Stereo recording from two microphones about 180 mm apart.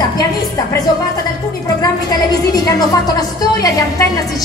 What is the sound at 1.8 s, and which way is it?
A woman's voice, 20° left (ahead or behind).